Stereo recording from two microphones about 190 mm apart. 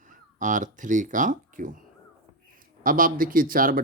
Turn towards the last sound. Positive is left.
turn(degrees=-50)  # may be behind; listen again after turning